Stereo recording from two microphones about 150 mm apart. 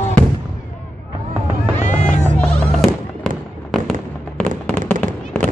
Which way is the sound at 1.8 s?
55° left (ahead or behind).